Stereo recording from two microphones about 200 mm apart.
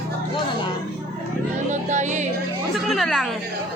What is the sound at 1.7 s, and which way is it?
Music, 35° right (ahead or behind).